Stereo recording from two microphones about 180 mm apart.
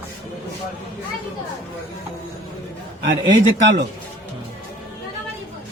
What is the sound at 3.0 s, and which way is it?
Speech, 90° right.